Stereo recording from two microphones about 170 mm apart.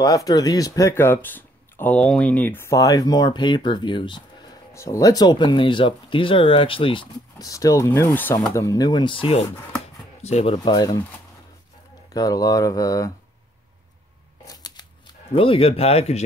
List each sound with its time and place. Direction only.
0.0 s speech: 20° left (ahead or behind)
4.7 s speech: 20° left (ahead or behind); by 10.6 s 40° left (ahead or behind)
10.6 s speech: 25° left (ahead or behind)
12.1 s speech: 20° left (ahead or behind)
14.4 s scissors: 20° left (ahead or behind)
15.3 s speech: 30° left (ahead or behind)